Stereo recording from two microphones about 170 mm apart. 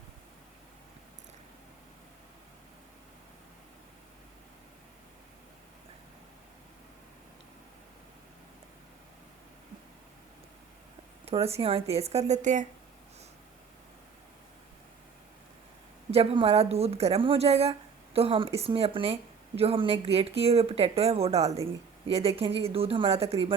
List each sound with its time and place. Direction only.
11.3 s speech: 35° right (ahead or behind)
16.1 s speech: 35° right (ahead or behind)